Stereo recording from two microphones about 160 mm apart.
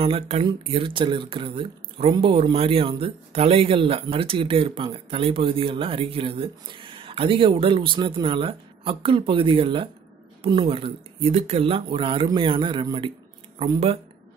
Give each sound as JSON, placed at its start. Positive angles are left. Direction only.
{"t": 0.0, "sound": "speech", "side_deg": -35}